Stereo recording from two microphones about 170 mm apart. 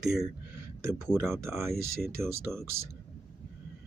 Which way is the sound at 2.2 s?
15° right (ahead or behind).